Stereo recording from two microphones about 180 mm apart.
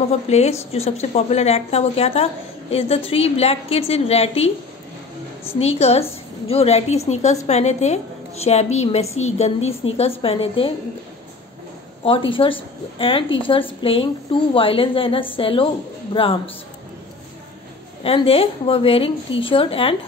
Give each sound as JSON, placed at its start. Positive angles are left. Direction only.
{"t": 0.3, "sound": "a woman's voice", "side_deg": 35}
{"t": 5.6, "sound": "a woman's voice", "side_deg": 35}
{"t": 12.3, "sound": "speech", "side_deg": 30}
{"t": 18.0, "sound": "a woman's voice", "side_deg": 30}